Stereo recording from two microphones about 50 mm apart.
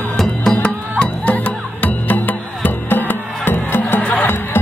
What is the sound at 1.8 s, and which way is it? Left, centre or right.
Music, left.